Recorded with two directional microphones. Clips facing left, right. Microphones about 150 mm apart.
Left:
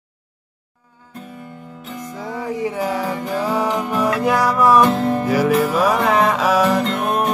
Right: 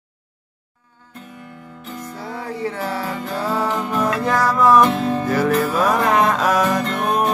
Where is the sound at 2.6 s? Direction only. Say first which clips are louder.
Left 3 dB; 15° left (ahead or behind).